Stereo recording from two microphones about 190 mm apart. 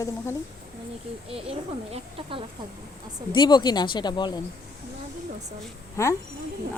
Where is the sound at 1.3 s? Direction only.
30° right (ahead or behind).